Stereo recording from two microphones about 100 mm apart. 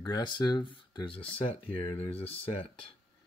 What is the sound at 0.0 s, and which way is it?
Speech, 45° left (ahead or behind).